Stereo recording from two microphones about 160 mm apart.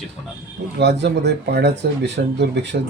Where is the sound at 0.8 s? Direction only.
90° right.